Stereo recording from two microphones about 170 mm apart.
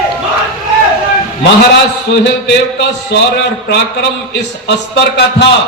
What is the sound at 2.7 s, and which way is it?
Speech, 90° left.